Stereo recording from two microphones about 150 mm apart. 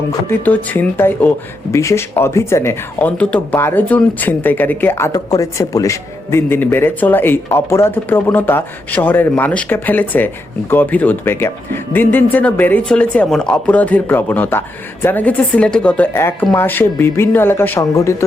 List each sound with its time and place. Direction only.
0.1 s speech: 15° left (ahead or behind)